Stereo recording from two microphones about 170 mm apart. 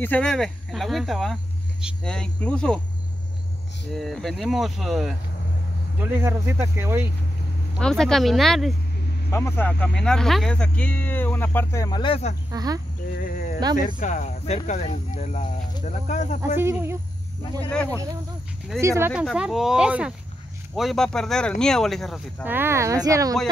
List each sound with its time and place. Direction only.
0.0 s speech: 5° left (ahead or behind)
3.9 s speech: centre (ahead or behind)
5.9 s speech: 10° right (ahead or behind)
7.8 s speech: 5° left (ahead or behind)
9.3 s speech: 15° left (ahead or behind); by 12.4 s 35° left (ahead or behind)
12.4 s speech: 20° right (ahead or behind)
13.1 s speech: 55° left (ahead or behind)
13.9 s speech: 45° left (ahead or behind)
16.5 s speech: 15° right (ahead or behind)
17.6 s speech: 5° left (ahead or behind)
18.8 s speech: 15° right (ahead or behind)
19.2 s speech: 5° right (ahead or behind)
22.4 s speech: 10° right (ahead or behind)